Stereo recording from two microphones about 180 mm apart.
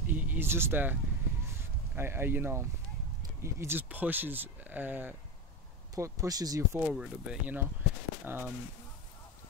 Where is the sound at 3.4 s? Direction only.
15° right (ahead or behind).